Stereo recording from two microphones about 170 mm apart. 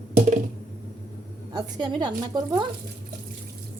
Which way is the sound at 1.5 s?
25° right (ahead or behind).